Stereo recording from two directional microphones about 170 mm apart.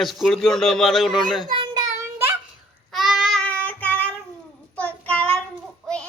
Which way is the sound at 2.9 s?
Centre (ahead or behind).